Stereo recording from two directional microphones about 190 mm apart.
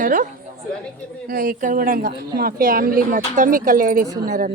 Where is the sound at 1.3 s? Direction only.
45° right (ahead or behind).